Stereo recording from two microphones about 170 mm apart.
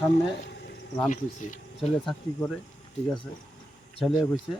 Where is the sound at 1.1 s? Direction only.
45° left (ahead or behind).